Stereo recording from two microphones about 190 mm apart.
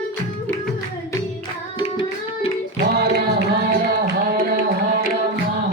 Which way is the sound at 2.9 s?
55° right (ahead or behind).